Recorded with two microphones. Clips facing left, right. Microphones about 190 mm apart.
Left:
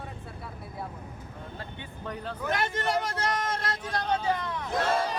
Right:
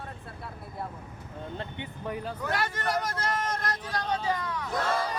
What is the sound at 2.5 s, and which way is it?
Speech, 20° left (ahead or behind).